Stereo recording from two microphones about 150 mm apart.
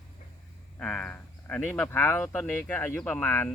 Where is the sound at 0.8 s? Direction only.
5° left (ahead or behind).